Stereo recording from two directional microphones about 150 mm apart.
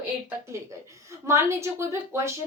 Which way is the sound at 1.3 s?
20° right (ahead or behind).